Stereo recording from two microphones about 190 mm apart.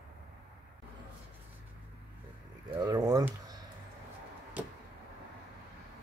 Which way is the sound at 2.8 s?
20° right (ahead or behind).